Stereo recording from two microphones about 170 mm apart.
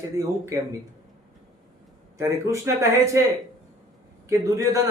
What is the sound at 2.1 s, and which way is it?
Speech, 15° right (ahead or behind).